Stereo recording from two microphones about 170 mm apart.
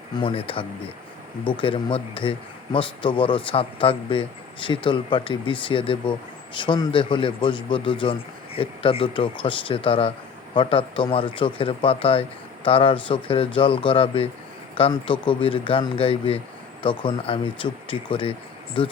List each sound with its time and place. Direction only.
0.2 s a man's voice: 30° left (ahead or behind)